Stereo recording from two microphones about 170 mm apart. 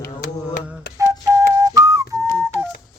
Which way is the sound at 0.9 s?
15° right (ahead or behind).